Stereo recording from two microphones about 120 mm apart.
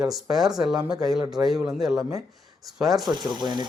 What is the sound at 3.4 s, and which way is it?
Speech, 35° right (ahead or behind).